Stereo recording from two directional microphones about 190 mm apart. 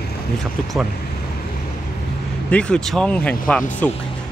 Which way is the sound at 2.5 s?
5° left (ahead or behind).